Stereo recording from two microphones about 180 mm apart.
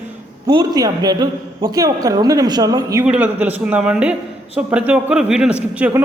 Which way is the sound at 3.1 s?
5° right (ahead or behind).